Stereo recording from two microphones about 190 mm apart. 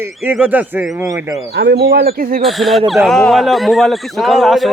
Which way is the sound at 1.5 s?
60° right (ahead or behind).